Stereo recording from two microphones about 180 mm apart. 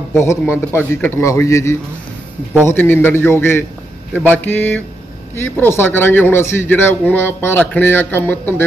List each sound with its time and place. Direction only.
0.1 s a man's voice: 15° left (ahead or behind)